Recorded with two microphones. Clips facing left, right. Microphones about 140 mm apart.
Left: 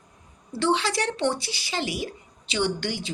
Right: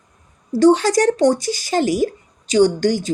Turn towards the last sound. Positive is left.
turn(degrees=-45)  # may be behind; listen again after turning